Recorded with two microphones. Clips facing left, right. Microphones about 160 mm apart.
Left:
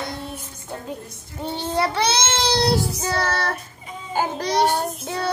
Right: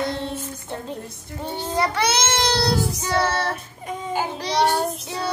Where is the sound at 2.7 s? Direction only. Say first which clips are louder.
Left 1 dB; 40° left (ahead or behind).